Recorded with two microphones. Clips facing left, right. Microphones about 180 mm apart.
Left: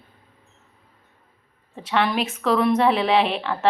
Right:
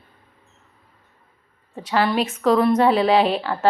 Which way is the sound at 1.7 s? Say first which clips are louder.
Right 2 dB; centre (ahead or behind).